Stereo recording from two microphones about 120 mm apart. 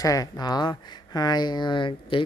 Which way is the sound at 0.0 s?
30° left (ahead or behind).